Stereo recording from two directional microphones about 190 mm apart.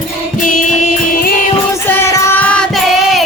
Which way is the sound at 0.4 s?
45° left (ahead or behind).